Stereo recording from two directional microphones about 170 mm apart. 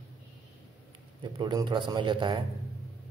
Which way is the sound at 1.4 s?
25° right (ahead or behind).